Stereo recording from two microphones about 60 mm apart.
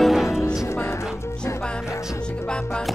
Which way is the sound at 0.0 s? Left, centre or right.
Centre.